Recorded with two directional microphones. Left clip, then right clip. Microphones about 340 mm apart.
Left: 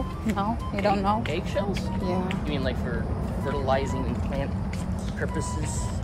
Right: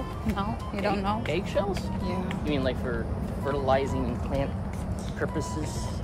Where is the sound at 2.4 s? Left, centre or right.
Centre.